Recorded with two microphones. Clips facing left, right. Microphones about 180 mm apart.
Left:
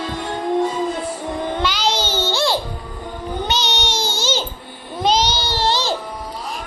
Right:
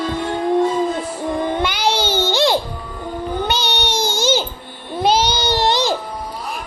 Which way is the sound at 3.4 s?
55° right (ahead or behind).